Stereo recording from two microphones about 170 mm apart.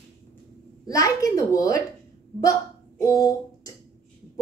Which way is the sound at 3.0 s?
20° left (ahead or behind).